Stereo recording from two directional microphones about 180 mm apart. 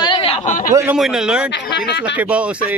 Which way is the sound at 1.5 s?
70° left (ahead or behind).